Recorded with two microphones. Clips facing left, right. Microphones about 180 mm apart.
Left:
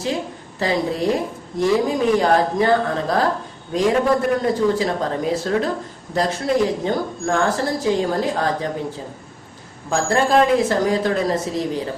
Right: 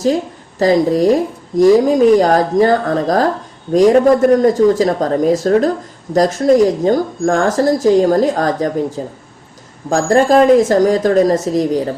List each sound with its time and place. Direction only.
0.6 s a woman's voice: 40° right (ahead or behind)